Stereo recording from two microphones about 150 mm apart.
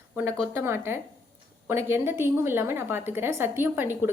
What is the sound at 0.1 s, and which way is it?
A woman's voice, 15° right (ahead or behind).